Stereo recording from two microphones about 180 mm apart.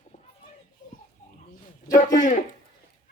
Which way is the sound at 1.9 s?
45° left (ahead or behind).